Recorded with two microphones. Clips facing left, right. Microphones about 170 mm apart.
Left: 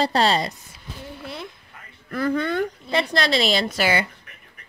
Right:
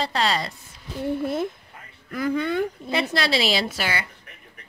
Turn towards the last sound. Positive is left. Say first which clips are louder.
# left 2 dB
turn(degrees=-5)  # may be behind; listen again after turning